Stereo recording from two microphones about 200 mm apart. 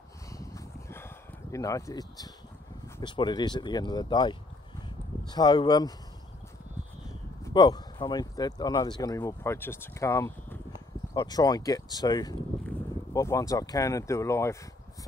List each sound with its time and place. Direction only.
0.3 s a sound: 15° left (ahead or behind)
3.0 s speech: 20° left (ahead or behind)
7.4 s speech: 20° left (ahead or behind)